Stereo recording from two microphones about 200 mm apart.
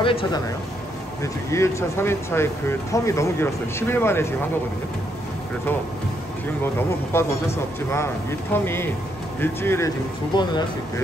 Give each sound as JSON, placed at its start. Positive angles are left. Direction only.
{"t": 0.0, "sound": "speech", "side_deg": 25}
{"t": 1.2, "sound": "speech", "side_deg": 15}
{"t": 6.6, "sound": "speech", "side_deg": 10}